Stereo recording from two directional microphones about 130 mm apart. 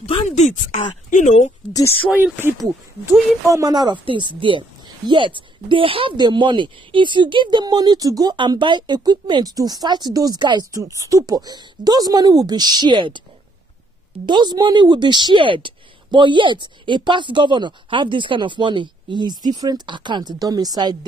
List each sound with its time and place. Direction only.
0.3 s speech: 65° left (ahead or behind)
1.7 s speech: 25° left (ahead or behind)
2.0 s speech: 10° right (ahead or behind)
3.5 s a woman's voice: 30° right (ahead or behind)
14.2 s a woman's voice: 35° right (ahead or behind)